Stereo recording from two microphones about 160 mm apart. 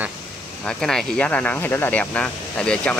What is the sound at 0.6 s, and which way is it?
Speech, 5° left (ahead or behind).